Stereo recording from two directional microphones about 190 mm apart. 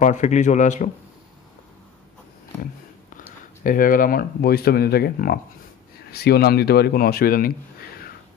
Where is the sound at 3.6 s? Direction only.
45° left (ahead or behind).